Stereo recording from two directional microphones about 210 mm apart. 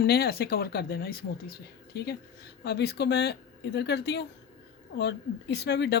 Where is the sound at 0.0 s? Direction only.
50° left (ahead or behind).